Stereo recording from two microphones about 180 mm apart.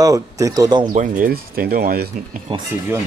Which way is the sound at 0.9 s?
50° right (ahead or behind).